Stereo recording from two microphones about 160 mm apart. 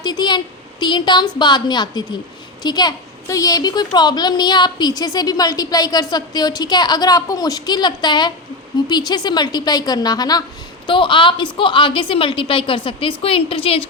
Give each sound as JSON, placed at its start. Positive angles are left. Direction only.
{"t": 0.0, "sound": "a woman's voice", "side_deg": 25}